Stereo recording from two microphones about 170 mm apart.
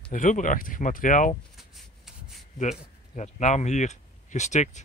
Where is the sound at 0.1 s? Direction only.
50° left (ahead or behind).